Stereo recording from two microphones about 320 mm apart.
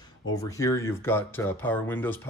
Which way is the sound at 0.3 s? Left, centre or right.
Centre.